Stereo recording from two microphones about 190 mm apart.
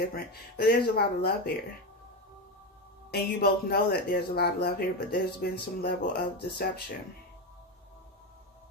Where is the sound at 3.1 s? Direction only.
55° left (ahead or behind).